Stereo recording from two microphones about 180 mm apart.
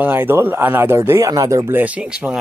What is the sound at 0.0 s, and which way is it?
Speech, 10° right (ahead or behind).